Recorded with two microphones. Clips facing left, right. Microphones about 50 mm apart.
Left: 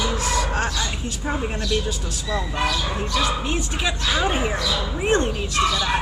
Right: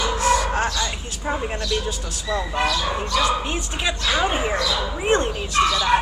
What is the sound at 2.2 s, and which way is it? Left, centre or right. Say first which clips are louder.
Speech: right 2 dB; centre.